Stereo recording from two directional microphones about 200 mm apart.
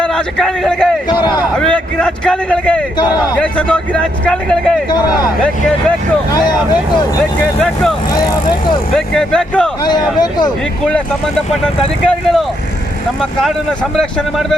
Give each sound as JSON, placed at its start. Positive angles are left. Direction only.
{"t": 0.0, "sound": "a man's voice", "side_deg": 5}
{"t": 7.6, "sound": "speech", "side_deg": 5}
{"t": 8.1, "sound": "speech", "side_deg": 20}
{"t": 9.0, "sound": "speech", "side_deg": 5}
{"t": 9.8, "sound": "speech", "side_deg": 20}
{"t": 11.6, "sound": "speech", "side_deg": 5}
{"t": 13.9, "sound": "speech", "side_deg": 0}